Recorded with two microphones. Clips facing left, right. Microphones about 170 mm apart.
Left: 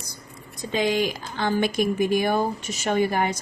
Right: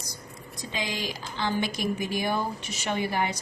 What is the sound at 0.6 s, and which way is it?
A woman's voice, 55° left (ahead or behind).